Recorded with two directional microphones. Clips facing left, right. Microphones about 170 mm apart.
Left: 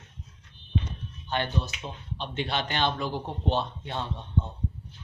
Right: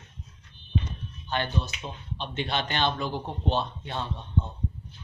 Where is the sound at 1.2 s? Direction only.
15° left (ahead or behind).